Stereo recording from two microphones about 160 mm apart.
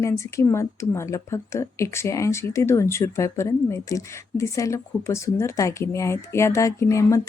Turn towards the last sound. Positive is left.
turn(degrees=20)  # may be behind; listen again after turning